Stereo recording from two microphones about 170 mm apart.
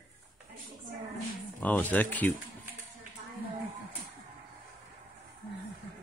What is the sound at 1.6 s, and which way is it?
Speech, 10° left (ahead or behind).